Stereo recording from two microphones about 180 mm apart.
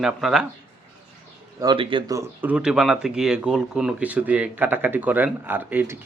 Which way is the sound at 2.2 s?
10° right (ahead or behind).